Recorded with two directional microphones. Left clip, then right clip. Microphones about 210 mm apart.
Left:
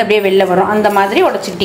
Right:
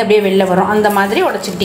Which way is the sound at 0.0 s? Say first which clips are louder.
Left 1 dB; centre (ahead or behind).